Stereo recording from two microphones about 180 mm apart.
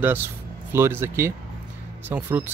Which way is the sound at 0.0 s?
10° right (ahead or behind).